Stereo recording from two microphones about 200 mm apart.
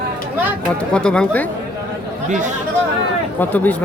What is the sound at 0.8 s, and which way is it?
Speech, 5° left (ahead or behind).